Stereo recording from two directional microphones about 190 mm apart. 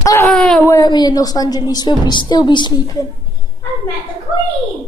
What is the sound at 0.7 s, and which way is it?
A woman's voice, 20° left (ahead or behind).